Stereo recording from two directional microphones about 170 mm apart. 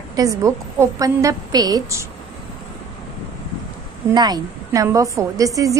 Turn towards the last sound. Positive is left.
turn(degrees=-20)  # may be behind; listen again after turning